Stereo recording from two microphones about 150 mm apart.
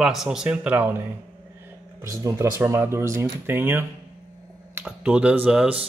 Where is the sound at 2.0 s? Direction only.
20° right (ahead or behind).